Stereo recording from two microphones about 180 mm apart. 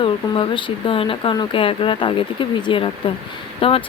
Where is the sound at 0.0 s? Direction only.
30° left (ahead or behind).